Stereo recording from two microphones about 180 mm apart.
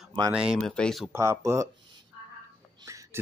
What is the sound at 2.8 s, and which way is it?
Whispering, 15° right (ahead or behind).